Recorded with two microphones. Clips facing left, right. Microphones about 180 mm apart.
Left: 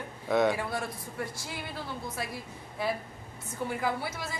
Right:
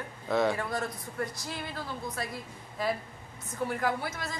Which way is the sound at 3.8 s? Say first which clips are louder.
Right 1 dB; 5° left (ahead or behind).